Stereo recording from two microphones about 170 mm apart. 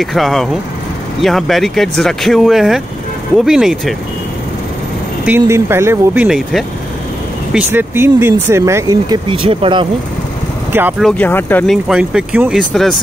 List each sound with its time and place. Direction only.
0.0 s speech: centre (ahead or behind)
5.2 s speech: 10° right (ahead or behind)
6.2 s speech: centre (ahead or behind)
7.5 s speech: 15° right (ahead or behind)
9.3 s speech: 30° right (ahead or behind)
10.7 s speech: 10° right (ahead or behind)
11.0 s speech: 5° left (ahead or behind)
11.7 s speech: 5° right (ahead or behind)